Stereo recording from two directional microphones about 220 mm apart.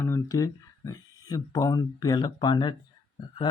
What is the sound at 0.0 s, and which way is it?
Speech, 15° left (ahead or behind).